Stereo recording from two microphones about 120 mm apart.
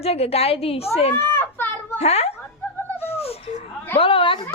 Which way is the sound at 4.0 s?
50° left (ahead or behind).